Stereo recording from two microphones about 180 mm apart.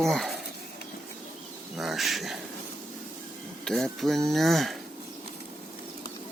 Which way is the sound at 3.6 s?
Centre (ahead or behind).